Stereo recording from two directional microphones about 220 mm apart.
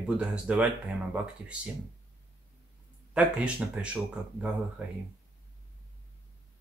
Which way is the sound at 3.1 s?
5° right (ahead or behind).